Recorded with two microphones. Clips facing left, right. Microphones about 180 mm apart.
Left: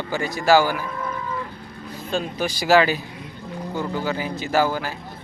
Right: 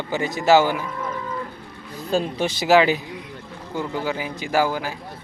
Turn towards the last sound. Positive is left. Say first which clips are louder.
# even
turn(degrees=-10)  # may be behind; listen again after turning